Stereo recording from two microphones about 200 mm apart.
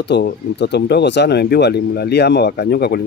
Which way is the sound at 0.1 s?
55° left (ahead or behind).